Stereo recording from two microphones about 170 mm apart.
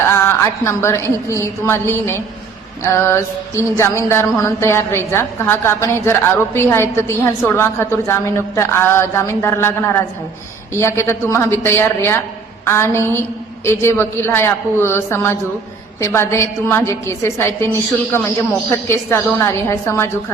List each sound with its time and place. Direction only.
0.3 s music: 15° left (ahead or behind)